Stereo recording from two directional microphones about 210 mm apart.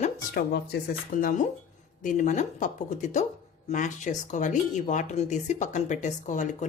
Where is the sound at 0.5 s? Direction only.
50° left (ahead or behind).